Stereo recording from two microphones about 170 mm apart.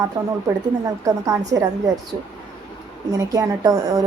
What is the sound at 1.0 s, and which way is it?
Speech, 20° right (ahead or behind).